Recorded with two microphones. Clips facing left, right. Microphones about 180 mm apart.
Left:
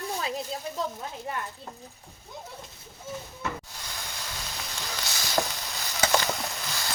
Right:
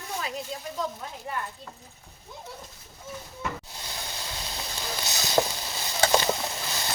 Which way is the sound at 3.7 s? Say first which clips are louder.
Right 2 dB; 25° right (ahead or behind).